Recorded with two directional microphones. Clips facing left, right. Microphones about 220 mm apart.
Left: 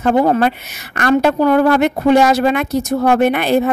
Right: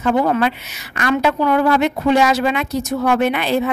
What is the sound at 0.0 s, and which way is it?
A woman's voice, 40° left (ahead or behind).